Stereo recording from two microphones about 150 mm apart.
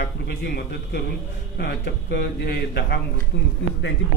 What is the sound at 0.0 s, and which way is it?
A man's voice, 90° left.